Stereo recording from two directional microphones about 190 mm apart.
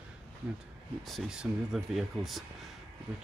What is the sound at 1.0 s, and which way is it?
Speech, centre (ahead or behind).